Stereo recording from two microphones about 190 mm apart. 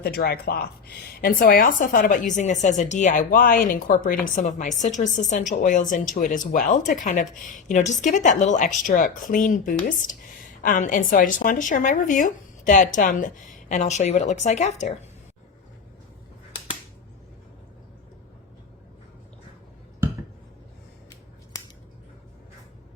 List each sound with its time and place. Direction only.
0.0 s a woman's voice: 55° left (ahead or behind); by 14.9 s 35° left (ahead or behind)